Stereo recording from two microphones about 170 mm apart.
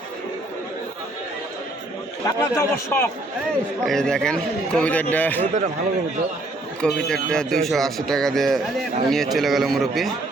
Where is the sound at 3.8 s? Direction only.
5° left (ahead or behind).